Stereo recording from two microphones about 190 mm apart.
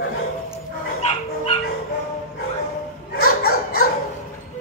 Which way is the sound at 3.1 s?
55° left (ahead or behind).